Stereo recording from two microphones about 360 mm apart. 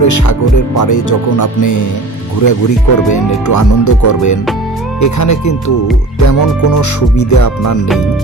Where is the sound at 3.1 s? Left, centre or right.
Left.